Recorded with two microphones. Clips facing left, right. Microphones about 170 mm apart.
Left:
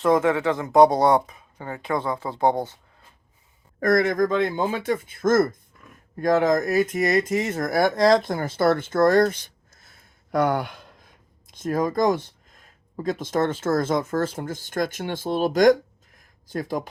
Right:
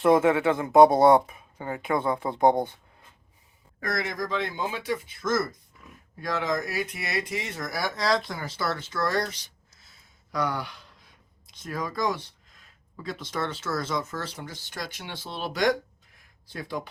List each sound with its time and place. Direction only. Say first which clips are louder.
0.1 s speech: left 1 dB; 25° right (ahead or behind)
3.8 s speech: left 11 dB; 50° left (ahead or behind)